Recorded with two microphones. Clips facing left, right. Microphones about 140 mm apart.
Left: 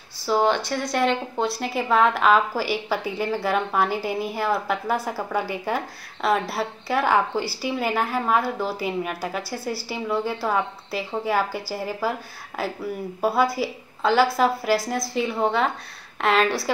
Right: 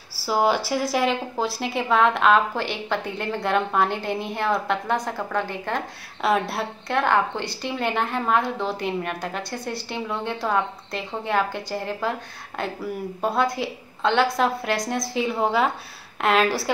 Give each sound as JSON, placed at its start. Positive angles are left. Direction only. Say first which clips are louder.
{"t": 0.2, "sound": "a woman's voice", "louder": "even", "side_deg": -5}